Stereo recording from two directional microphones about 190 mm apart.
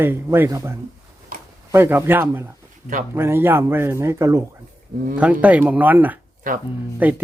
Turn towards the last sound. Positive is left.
turn(degrees=-10)  # may be behind; listen again after turning